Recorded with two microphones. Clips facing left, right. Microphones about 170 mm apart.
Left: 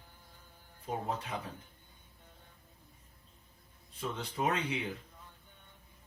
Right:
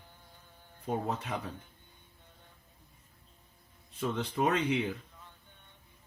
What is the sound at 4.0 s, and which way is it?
Speech, 60° right (ahead or behind).